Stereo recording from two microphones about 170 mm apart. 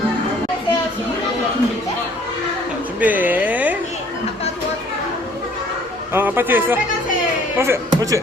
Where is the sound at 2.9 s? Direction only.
10° right (ahead or behind).